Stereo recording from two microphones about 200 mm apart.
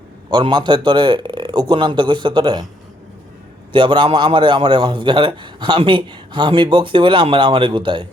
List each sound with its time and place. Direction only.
0.3 s a man's voice: 20° right (ahead or behind)
3.7 s a man's voice: 25° right (ahead or behind)